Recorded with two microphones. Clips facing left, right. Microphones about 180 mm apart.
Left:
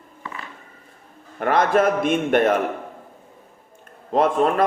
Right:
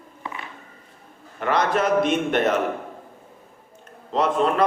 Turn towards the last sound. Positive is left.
turn(degrees=50)  # may be behind; listen again after turning